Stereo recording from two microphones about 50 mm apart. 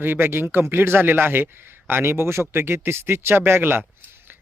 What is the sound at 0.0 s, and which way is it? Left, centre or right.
Speech, right.